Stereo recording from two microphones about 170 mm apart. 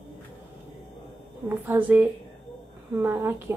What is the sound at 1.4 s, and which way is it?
Speech, 10° right (ahead or behind).